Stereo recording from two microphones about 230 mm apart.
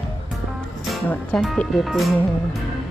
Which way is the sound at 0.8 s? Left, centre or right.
Centre.